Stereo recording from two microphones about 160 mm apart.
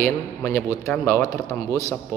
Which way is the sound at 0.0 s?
20° left (ahead or behind).